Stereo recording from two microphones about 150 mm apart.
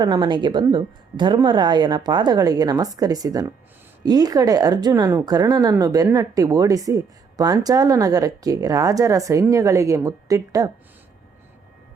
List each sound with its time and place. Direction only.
0.0 s speech: 30° right (ahead or behind)